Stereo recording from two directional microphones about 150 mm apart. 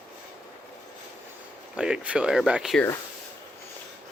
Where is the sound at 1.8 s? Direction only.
5° right (ahead or behind).